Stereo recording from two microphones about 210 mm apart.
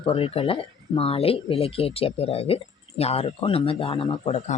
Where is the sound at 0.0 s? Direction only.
25° left (ahead or behind).